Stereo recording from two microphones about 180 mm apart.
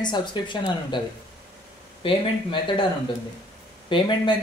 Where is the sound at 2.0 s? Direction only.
30° left (ahead or behind).